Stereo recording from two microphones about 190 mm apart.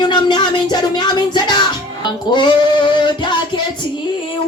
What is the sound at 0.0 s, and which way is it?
Music, 25° left (ahead or behind).